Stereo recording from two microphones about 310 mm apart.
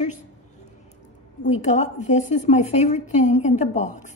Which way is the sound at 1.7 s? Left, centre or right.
Left.